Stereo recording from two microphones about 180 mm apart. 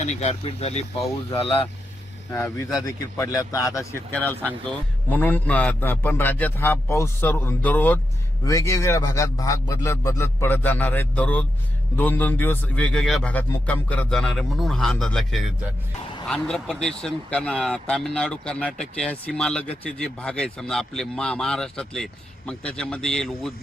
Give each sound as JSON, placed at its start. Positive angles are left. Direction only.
{"t": 0.0, "sound": "speech", "side_deg": 40}
{"t": 0.9, "sound": "speech", "side_deg": 20}
{"t": 1.4, "sound": "speech", "side_deg": 30}
{"t": 2.3, "sound": "speech", "side_deg": 15}